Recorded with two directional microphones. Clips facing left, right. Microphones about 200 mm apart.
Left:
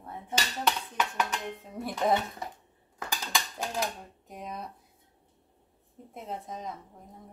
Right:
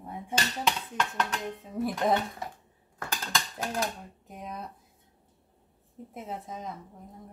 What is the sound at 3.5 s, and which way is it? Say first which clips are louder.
Dishes: right 1 dB; centre (ahead or behind).